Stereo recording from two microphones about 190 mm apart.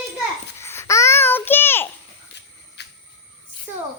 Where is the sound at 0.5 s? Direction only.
15° left (ahead or behind).